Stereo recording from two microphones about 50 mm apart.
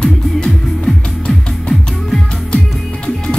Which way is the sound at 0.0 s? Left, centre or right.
Centre.